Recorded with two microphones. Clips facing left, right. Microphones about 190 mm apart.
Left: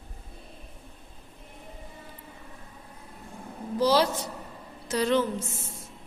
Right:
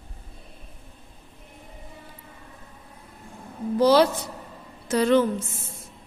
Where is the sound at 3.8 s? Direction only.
60° right (ahead or behind).